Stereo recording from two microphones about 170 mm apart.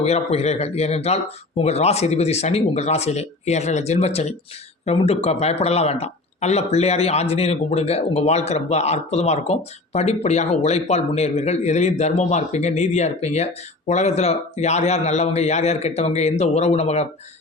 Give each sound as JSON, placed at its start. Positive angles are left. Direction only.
{"t": 0.0, "sound": "speech", "side_deg": 40}